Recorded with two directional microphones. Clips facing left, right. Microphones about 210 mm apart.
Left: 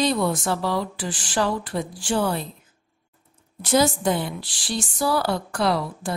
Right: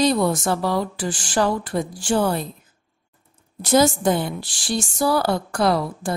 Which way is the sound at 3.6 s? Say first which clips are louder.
Right 3 dB; 40° right (ahead or behind).